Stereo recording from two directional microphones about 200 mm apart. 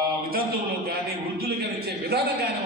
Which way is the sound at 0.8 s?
55° right (ahead or behind).